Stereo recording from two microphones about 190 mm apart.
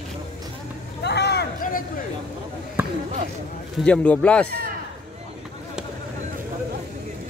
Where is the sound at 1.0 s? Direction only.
60° left (ahead or behind).